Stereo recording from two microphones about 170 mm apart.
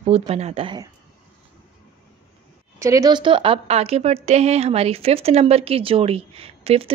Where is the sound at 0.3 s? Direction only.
40° right (ahead or behind).